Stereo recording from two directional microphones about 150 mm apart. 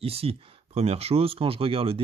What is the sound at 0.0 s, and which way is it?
Speech, 40° right (ahead or behind).